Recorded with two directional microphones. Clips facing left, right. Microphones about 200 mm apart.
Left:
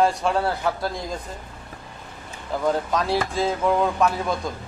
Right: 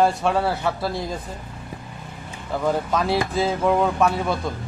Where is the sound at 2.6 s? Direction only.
Centre (ahead or behind).